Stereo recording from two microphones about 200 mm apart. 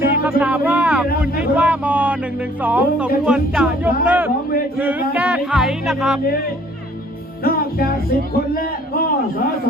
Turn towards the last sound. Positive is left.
turn(degrees=50)  # may be behind; listen again after turning